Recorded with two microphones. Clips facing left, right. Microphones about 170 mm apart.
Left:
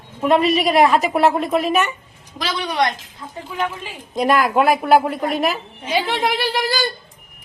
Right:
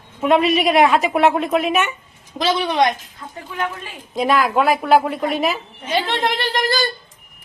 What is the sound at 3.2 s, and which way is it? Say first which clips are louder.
A woman's voice: left 1 dB; 10° left (ahead or behind).